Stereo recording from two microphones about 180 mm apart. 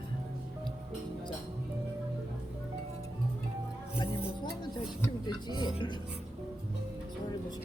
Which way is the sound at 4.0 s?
25° left (ahead or behind).